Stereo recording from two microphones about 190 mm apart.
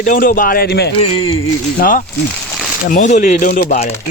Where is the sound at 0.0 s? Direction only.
45° left (ahead or behind).